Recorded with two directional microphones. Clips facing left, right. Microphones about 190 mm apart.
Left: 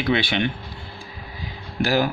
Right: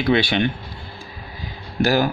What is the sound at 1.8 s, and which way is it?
Speech, 40° right (ahead or behind).